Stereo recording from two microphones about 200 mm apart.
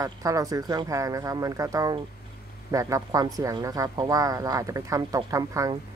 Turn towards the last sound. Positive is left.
turn(degrees=-15)  # may be behind; listen again after turning